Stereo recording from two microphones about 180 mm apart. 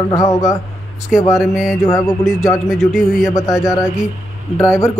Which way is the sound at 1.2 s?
15° left (ahead or behind).